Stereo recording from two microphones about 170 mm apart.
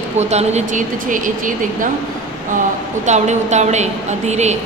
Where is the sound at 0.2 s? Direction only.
40° right (ahead or behind).